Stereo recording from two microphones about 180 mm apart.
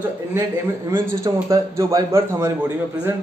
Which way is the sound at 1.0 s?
15° right (ahead or behind).